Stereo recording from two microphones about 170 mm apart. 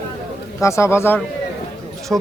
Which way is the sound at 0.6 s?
15° left (ahead or behind).